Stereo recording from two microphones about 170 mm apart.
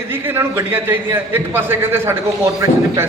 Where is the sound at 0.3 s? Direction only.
15° right (ahead or behind).